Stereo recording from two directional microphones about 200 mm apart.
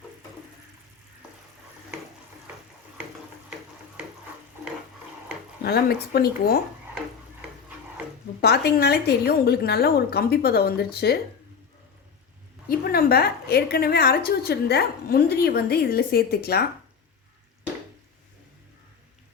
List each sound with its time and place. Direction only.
5.6 s a woman's voice: 50° left (ahead or behind)
8.4 s a woman's voice: 55° left (ahead or behind)
12.6 s a woman's voice: 50° left (ahead or behind)